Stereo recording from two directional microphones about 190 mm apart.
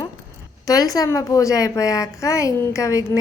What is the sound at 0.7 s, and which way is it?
A woman's voice, 20° left (ahead or behind).